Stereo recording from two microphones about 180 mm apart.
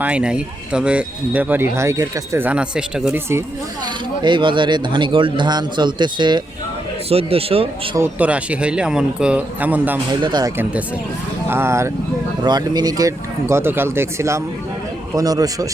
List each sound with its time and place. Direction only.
0.0 s a man's voice: 5° right (ahead or behind)
4.2 s a man's voice: 25° right (ahead or behind)
7.9 s a man's voice: 10° right (ahead or behind)
10.1 s a man's voice: 25° right (ahead or behind)
11.4 s a man's voice: 15° right (ahead or behind)